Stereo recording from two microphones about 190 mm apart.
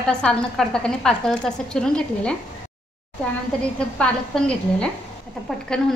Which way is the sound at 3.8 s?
5° left (ahead or behind).